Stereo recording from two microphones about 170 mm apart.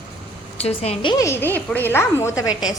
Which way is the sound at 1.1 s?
15° left (ahead or behind).